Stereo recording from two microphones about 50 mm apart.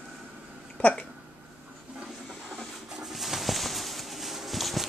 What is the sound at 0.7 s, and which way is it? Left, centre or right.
Speech, left.